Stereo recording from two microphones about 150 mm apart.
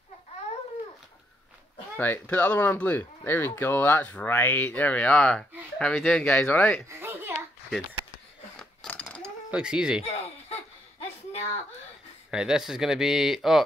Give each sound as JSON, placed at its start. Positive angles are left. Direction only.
{"t": 2.0, "sound": "speech", "side_deg": 10}
{"t": 6.9, "sound": "babbling", "side_deg": -15}
{"t": 8.5, "sound": "a sound", "side_deg": 10}
{"t": 9.5, "sound": "speech", "side_deg": -5}
{"t": 10.1, "sound": "a sound", "side_deg": 45}
{"t": 12.3, "sound": "speech", "side_deg": -5}